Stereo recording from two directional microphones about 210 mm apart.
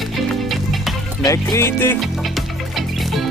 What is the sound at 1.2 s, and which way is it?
Speech, 15° left (ahead or behind).